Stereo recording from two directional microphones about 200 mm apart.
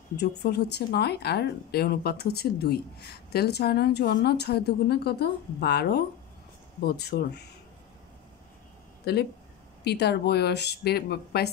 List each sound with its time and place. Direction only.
0.2 s speech: 55° left (ahead or behind)
9.1 s speech: 55° left (ahead or behind)